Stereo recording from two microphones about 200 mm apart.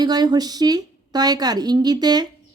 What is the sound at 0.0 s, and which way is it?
A woman's voice, 20° right (ahead or behind).